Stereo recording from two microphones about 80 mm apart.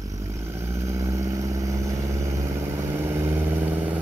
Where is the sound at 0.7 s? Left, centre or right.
Right.